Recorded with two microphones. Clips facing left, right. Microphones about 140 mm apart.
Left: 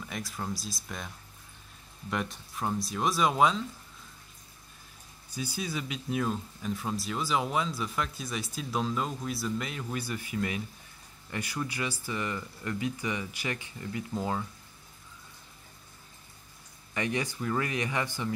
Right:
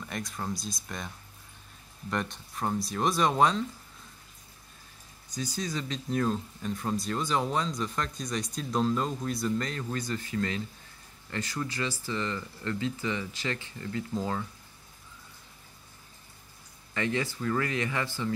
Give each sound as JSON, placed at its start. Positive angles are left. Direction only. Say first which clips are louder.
{"t": 0.0, "sound": "speech", "louder": "right 1 dB", "side_deg": 0}
{"t": 5.6, "sound": "speech", "louder": "right 2 dB", "side_deg": 10}
{"t": 16.9, "sound": "speech", "louder": "right 1 dB", "side_deg": 15}